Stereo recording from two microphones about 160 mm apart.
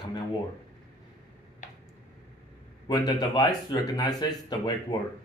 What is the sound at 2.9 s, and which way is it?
Speech, 25° left (ahead or behind).